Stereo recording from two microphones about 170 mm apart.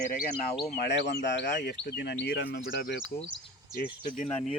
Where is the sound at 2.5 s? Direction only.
75° left (ahead or behind).